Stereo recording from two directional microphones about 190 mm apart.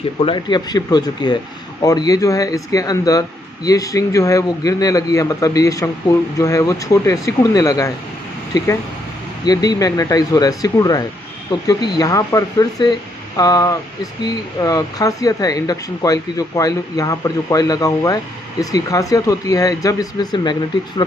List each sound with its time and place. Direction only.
0.2 s speech: 25° left (ahead or behind)